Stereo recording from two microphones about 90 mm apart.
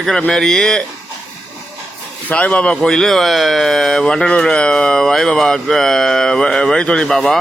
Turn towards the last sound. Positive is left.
turn(degrees=5)  # may be behind; listen again after turning